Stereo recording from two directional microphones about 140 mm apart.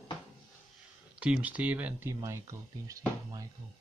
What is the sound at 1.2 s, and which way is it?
Speech, 10° right (ahead or behind).